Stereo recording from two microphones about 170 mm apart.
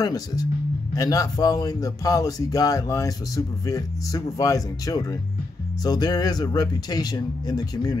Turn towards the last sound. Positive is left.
turn(degrees=20)  # may be behind; listen again after turning